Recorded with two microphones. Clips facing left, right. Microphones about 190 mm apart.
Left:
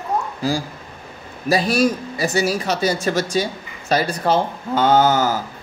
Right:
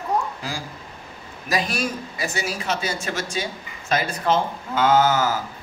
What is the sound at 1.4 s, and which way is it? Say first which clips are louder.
Speech: left 8 dB; 35° left (ahead or behind).